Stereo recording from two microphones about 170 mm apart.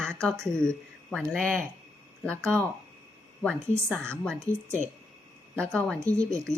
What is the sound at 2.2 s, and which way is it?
Speech, 5° left (ahead or behind).